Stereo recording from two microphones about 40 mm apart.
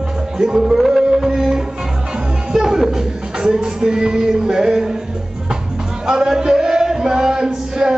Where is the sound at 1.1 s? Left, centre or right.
Centre.